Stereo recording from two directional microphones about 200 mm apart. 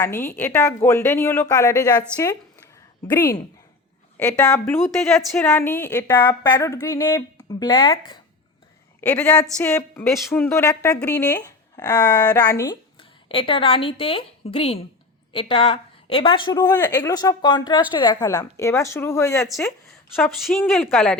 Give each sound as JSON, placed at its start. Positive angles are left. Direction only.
{"t": 0.0, "sound": "a woman's voice", "side_deg": 10}
{"t": 3.1, "sound": "a woman's voice", "side_deg": 15}
{"t": 9.0, "sound": "a woman's voice", "side_deg": 10}
{"t": 13.0, "sound": "a woman's voice", "side_deg": 25}
{"t": 20.1, "sound": "a woman's voice", "side_deg": 0}